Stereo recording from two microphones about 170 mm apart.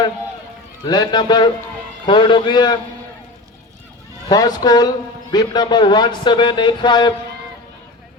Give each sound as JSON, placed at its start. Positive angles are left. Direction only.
{"t": 0.9, "sound": "a man's voice", "side_deg": 25}
{"t": 4.3, "sound": "a man's voice", "side_deg": 20}